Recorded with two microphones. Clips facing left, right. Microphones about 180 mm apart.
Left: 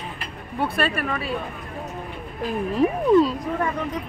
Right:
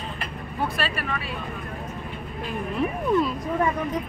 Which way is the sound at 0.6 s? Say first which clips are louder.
Left 4 dB; 55° left (ahead or behind).